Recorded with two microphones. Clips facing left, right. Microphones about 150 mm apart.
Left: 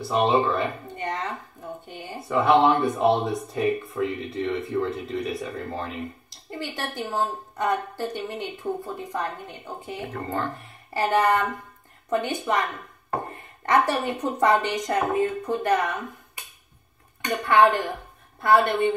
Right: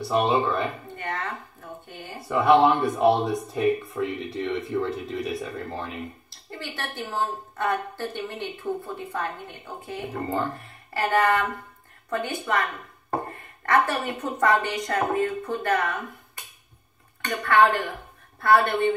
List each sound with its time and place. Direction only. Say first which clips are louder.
0.0 s speech: left 1 dB; centre (ahead or behind)
0.9 s a sound: left 2 dB; 20° left (ahead or behind)
2.2 s speech: right 1 dB; centre (ahead or behind)
6.6 s a woman's voice: left 3 dB; 15° left (ahead or behind)
10.9 s a woman's voice: left 1 dB; 15° left (ahead or behind)
13.7 s a woman's voice: left 1 dB; 20° left (ahead or behind)
17.2 s a woman's voice: left 1 dB; 20° left (ahead or behind)